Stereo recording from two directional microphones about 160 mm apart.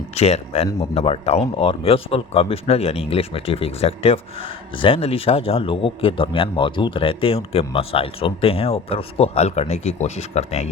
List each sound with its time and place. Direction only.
0.1 s speech: 40° left (ahead or behind)